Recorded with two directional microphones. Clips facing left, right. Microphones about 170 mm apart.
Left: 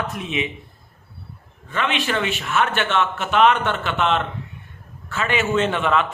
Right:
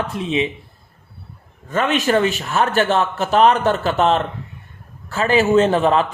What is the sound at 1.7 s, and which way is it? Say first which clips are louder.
Speech: right 6 dB; 40° right (ahead or behind).